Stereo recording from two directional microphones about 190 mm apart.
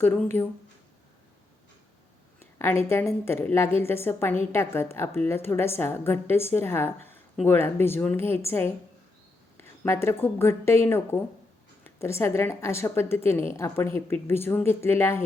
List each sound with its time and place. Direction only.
0.4 s a woman's voice: 10° left (ahead or behind)
2.4 s a woman's voice: 10° left (ahead or behind)